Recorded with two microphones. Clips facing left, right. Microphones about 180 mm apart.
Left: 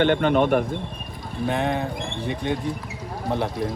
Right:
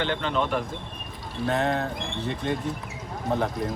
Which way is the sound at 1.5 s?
10° left (ahead or behind).